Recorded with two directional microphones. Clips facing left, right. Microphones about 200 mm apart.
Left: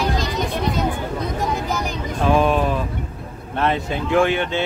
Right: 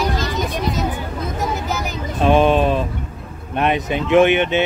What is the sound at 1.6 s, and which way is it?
Vehicle, 5° right (ahead or behind).